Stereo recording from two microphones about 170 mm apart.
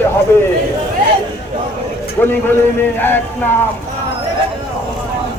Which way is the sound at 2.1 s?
10° left (ahead or behind).